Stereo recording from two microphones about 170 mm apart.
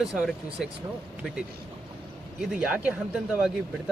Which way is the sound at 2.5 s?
10° right (ahead or behind).